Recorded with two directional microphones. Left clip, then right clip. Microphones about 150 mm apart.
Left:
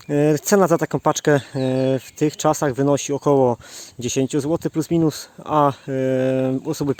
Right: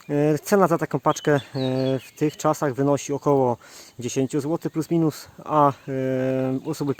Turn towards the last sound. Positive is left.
turn(degrees=30)  # may be behind; listen again after turning